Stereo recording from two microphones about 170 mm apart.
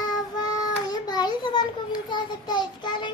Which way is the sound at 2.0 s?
25° left (ahead or behind).